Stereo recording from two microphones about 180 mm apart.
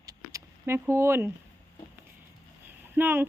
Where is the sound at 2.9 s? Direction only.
10° right (ahead or behind).